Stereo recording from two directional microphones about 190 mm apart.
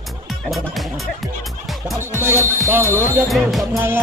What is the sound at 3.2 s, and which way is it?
Speech, centre (ahead or behind).